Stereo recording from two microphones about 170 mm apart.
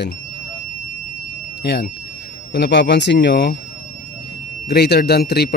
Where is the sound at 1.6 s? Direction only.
80° left.